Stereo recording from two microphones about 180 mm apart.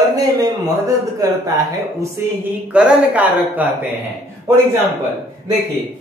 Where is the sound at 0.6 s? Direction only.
20° right (ahead or behind).